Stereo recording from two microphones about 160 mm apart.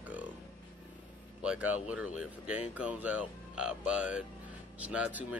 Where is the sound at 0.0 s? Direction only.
10° right (ahead or behind).